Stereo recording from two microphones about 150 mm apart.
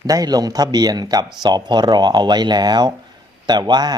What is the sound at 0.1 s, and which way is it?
Speech, 25° right (ahead or behind).